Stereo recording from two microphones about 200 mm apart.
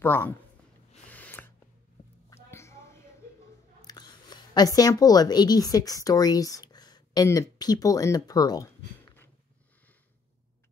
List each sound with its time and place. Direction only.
0.0 s speech: 10° left (ahead or behind)
1.0 s snort: 5° left (ahead or behind)
2.2 s a sound: 15° left (ahead or behind)
3.8 s speech: 20° left (ahead or behind)